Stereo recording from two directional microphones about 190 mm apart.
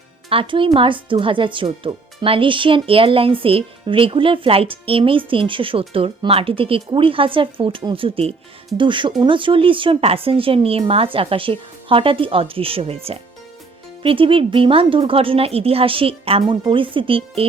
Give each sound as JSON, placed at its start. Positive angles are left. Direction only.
{"t": 0.3, "sound": "speech", "side_deg": -30}